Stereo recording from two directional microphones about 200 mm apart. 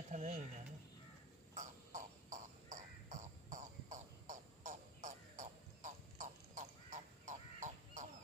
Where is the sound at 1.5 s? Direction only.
40° right (ahead or behind).